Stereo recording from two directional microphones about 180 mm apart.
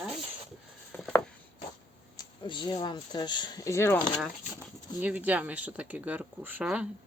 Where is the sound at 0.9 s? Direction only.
5° left (ahead or behind).